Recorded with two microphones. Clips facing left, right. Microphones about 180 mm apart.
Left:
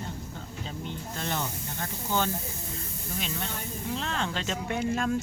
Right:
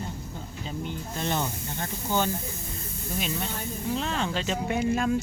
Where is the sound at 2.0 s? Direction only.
15° right (ahead or behind).